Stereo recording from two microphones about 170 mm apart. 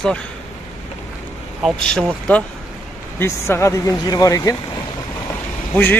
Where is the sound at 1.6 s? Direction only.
Centre (ahead or behind).